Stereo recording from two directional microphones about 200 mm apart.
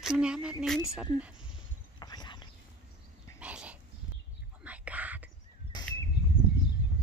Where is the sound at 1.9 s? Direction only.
20° left (ahead or behind).